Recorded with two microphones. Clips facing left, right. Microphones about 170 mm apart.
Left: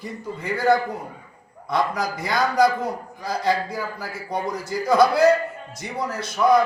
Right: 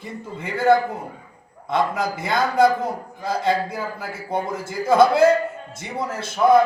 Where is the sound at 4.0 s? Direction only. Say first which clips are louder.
Right 2 dB; 25° right (ahead or behind).